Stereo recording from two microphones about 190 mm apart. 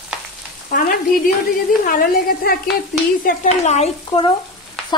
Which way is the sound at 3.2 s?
40° left (ahead or behind).